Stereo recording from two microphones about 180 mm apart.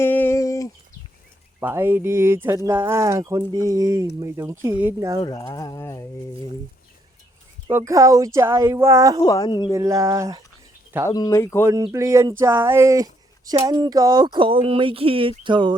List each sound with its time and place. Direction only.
0.0 s a sound: 10° left (ahead or behind)
1.5 s speech: 10° right (ahead or behind)
5.2 s speech: 20° left (ahead or behind)
7.7 s speech: 15° right (ahead or behind)
9.2 s speech: 20° left (ahead or behind)
9.7 s speech: 15° right (ahead or behind)
11.1 s speech: 20° left (ahead or behind)
11.6 s speech: 15° right (ahead or behind)